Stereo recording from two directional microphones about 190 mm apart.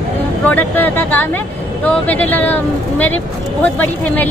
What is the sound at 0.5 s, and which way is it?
A woman's voice, 10° left (ahead or behind).